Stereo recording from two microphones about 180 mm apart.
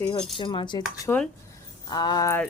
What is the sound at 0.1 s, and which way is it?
Speech, 25° left (ahead or behind).